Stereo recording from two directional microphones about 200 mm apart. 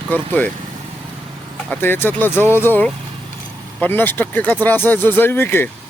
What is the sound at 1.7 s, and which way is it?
Speech, 10° left (ahead or behind).